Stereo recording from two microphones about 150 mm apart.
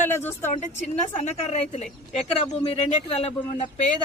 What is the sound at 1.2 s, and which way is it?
A woman's voice, 45° left (ahead or behind).